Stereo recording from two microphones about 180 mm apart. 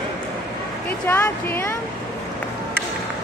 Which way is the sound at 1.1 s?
10° left (ahead or behind).